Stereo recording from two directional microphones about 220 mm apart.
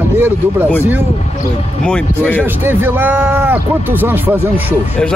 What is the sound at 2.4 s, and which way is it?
Speech, 10° right (ahead or behind).